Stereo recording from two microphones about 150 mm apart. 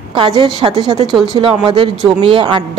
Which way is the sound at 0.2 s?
35° right (ahead or behind).